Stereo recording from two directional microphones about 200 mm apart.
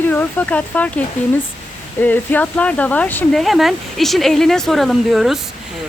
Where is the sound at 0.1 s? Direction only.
10° left (ahead or behind).